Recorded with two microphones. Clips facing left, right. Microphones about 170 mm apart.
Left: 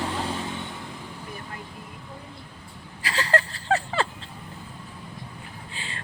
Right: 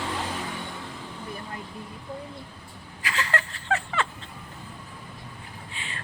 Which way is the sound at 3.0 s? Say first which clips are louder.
Left 4 dB; 35° left (ahead or behind).